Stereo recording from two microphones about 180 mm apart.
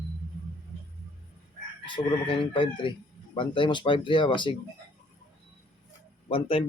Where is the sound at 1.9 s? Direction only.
30° left (ahead or behind).